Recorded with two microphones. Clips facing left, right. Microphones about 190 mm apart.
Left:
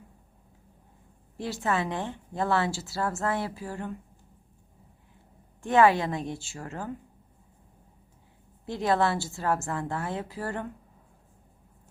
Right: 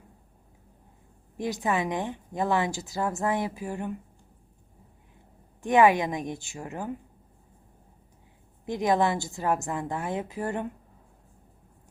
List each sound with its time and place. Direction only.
1.4 s a woman's voice: 15° right (ahead or behind)
5.6 s a woman's voice: 15° right (ahead or behind)
8.6 s a woman's voice: 15° right (ahead or behind)